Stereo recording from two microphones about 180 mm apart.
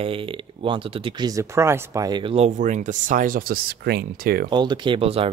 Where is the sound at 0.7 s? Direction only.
30° right (ahead or behind).